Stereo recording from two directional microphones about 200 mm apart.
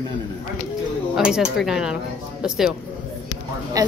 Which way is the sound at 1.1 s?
5° right (ahead or behind).